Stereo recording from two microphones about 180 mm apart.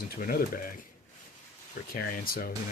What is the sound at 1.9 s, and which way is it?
Speech, 55° left (ahead or behind).